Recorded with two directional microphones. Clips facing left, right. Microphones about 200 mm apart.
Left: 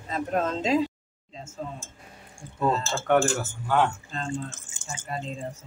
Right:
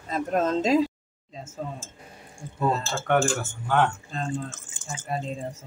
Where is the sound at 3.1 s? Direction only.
Centre (ahead or behind).